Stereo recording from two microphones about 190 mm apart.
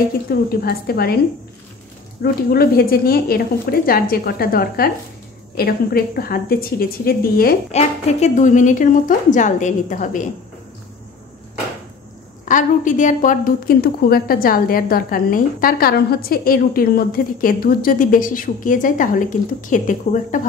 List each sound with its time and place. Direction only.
0.3 s a woman's voice: 55° left (ahead or behind)
2.2 s a woman's voice: 55° left (ahead or behind)
7.7 s a woman's voice: 35° left (ahead or behind)
12.4 s a woman's voice: 40° left (ahead or behind)